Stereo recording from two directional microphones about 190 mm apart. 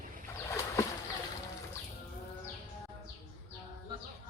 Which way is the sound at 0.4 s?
15° left (ahead or behind).